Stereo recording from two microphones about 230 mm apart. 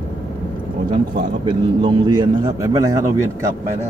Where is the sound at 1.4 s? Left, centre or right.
Centre.